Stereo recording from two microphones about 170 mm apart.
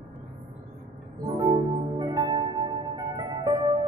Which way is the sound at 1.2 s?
25° right (ahead or behind).